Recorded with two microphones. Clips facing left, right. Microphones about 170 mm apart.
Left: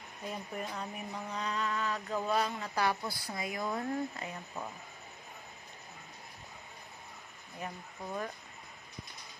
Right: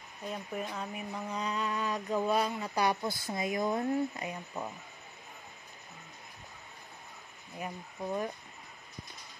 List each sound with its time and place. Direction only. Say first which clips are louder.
0.3 s speech: right 2 dB; centre (ahead or behind)
7.6 s speech: right 4 dB; 15° right (ahead or behind)